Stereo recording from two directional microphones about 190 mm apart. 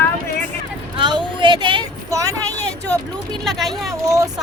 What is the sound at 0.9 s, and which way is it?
Speech, 25° right (ahead or behind).